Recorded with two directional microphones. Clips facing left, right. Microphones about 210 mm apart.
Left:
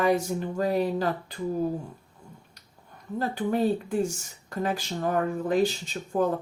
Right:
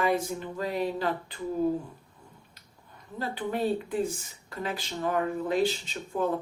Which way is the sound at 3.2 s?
45° left (ahead or behind).